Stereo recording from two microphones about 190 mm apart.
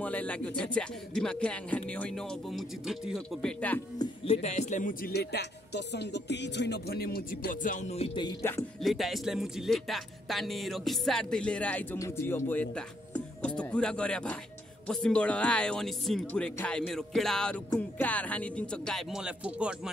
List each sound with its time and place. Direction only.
0.0 s speech: 5° left (ahead or behind)
4.0 s speech: 35° left (ahead or behind)
8.8 s speech: centre (ahead or behind)